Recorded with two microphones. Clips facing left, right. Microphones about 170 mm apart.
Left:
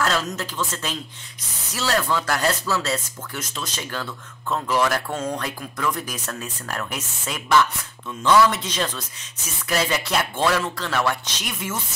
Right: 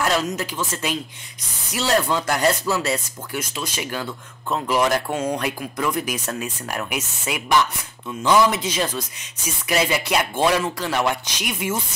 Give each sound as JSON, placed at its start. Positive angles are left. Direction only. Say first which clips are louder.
{"t": 0.0, "sound": "speech", "louder": "right 2 dB", "side_deg": -15}